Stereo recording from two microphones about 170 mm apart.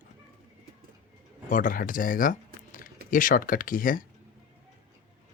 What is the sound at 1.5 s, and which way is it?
Speech, 50° left (ahead or behind).